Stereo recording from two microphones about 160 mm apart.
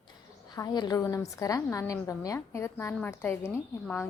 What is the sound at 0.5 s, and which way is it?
A woman's voice, 25° left (ahead or behind).